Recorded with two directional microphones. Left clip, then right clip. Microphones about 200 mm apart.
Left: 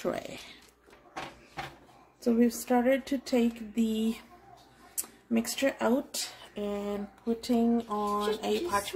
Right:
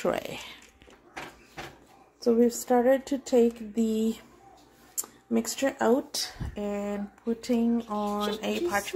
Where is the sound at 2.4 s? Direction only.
15° right (ahead or behind).